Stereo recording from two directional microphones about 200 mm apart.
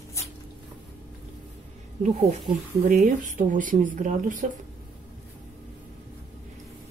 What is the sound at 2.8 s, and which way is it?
Speech, 40° right (ahead or behind).